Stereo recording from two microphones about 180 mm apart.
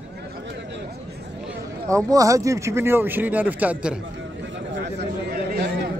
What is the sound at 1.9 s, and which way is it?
Speech, 20° right (ahead or behind).